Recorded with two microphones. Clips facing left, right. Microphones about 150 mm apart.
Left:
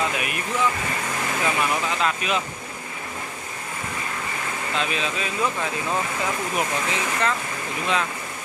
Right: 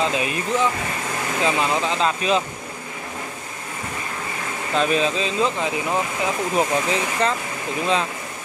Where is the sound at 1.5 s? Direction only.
25° right (ahead or behind).